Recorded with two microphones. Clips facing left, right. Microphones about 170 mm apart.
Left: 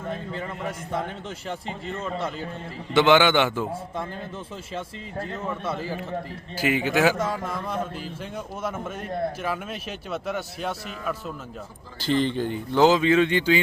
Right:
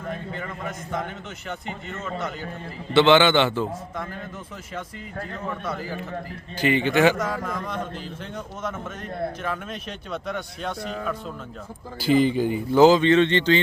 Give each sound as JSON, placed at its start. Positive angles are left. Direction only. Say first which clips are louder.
{"t": 0.1, "sound": "a man's voice", "louder": "even", "side_deg": 30}
{"t": 2.9, "sound": "a man's voice", "louder": "right 2 dB", "side_deg": 10}
{"t": 4.7, "sound": "speech", "louder": "left 1 dB", "side_deg": 25}
{"t": 6.6, "sound": "a man's voice", "louder": "right 2 dB", "side_deg": 5}
{"t": 11.9, "sound": "speech", "louder": "right 4 dB", "side_deg": -10}